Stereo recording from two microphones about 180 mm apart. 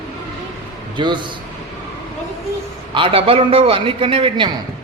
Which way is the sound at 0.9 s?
25° right (ahead or behind).